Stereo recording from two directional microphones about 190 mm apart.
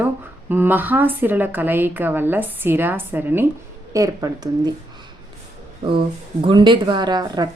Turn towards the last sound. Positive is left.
turn(degrees=-20)  # may be behind; listen again after turning